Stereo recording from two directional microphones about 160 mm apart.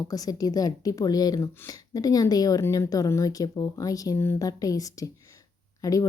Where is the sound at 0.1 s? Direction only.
25° left (ahead or behind).